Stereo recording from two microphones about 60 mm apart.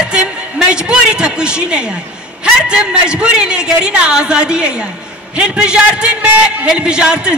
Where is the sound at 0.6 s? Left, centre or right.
Centre.